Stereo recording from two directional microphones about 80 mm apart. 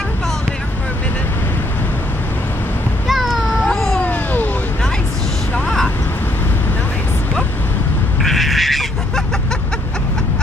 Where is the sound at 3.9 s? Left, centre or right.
Left.